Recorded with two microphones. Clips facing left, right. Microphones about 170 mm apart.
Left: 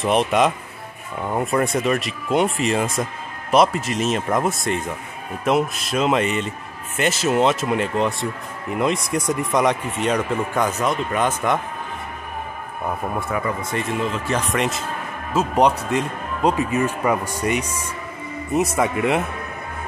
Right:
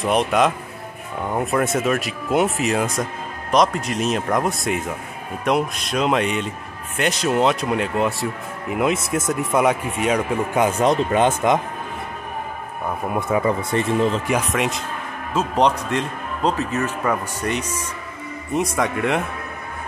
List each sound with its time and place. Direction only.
0.0 s speech: centre (ahead or behind)
10.7 s speech: 30° right (ahead or behind)
13.5 s speech: 30° right (ahead or behind)
14.5 s a man's voice: centre (ahead or behind)
18.8 s speech: 5° left (ahead or behind)